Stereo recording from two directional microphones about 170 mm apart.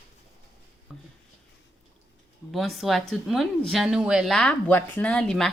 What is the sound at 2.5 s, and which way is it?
A woman's voice, centre (ahead or behind).